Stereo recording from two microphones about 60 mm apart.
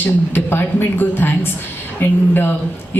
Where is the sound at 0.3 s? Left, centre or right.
Left.